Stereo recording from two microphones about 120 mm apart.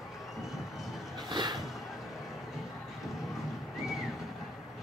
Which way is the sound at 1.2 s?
40° right (ahead or behind).